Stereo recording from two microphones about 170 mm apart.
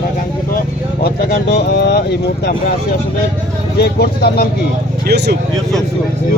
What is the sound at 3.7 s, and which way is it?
Speech, 70° left (ahead or behind).